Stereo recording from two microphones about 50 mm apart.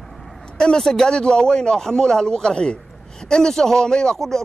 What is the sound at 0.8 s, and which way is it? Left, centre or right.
Speech, centre.